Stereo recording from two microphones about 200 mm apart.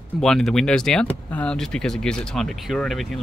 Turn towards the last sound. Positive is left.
turn(degrees=0)  # may be behind; listen again after turning